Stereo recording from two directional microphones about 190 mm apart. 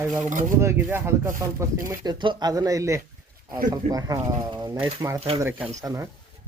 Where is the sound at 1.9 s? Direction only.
25° right (ahead or behind).